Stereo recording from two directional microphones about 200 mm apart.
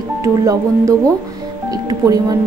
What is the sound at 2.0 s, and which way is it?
Speech, 15° right (ahead or behind).